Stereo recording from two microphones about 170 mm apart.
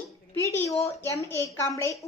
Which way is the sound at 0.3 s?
15° left (ahead or behind).